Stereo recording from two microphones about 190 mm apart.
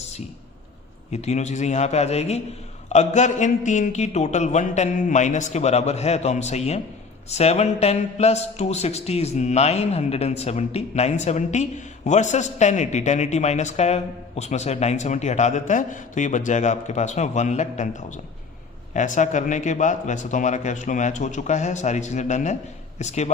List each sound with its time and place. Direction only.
1.1 s a man's voice: 35° left (ahead or behind)